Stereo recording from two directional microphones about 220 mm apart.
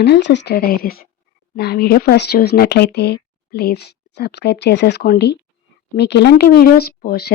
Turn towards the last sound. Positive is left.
turn(degrees=45)  # may be behind; listen again after turning